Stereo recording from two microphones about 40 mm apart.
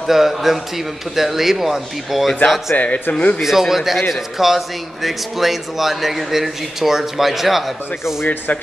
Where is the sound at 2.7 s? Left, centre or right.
Left.